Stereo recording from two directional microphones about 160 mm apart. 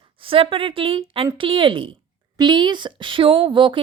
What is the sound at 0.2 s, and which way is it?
A woman's voice, 35° right (ahead or behind).